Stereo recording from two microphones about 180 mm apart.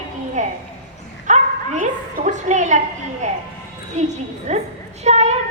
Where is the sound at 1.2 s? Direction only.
45° right (ahead or behind).